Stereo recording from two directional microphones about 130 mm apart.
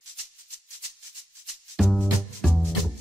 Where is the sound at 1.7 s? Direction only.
Centre (ahead or behind).